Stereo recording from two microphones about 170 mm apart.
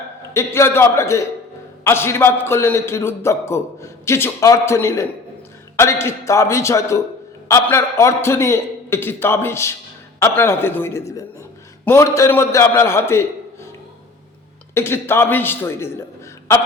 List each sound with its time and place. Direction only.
0.3 s a man's voice: 15° left (ahead or behind)
14.8 s a man's voice: 15° left (ahead or behind)